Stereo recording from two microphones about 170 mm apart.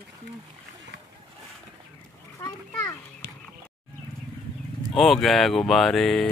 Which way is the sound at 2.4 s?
20° left (ahead or behind).